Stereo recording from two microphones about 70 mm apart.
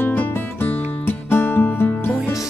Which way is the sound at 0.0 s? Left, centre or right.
Left.